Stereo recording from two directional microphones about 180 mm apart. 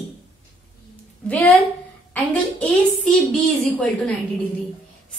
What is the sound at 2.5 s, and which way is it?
A woman's voice, 5° left (ahead or behind).